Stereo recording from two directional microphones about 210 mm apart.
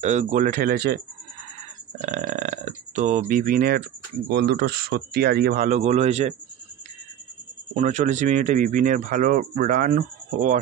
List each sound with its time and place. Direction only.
0.0 s speech: 35° right (ahead or behind)
2.0 s speech: 35° right (ahead or behind)
7.7 s speech: 35° right (ahead or behind)